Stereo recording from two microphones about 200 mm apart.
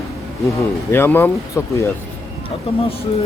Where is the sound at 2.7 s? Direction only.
30° left (ahead or behind).